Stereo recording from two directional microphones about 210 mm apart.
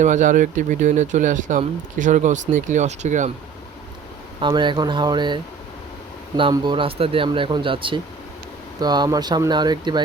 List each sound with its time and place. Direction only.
0.0 s speech: 35° right (ahead or behind)
4.4 s speech: 20° right (ahead or behind)